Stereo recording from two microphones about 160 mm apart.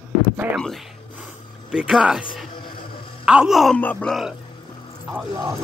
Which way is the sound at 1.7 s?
5° right (ahead or behind).